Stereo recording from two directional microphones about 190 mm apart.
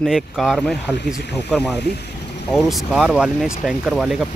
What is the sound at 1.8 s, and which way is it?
Speech, 60° left (ahead or behind).